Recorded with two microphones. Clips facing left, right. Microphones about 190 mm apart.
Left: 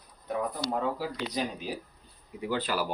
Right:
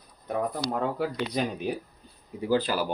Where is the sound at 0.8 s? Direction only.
55° right (ahead or behind).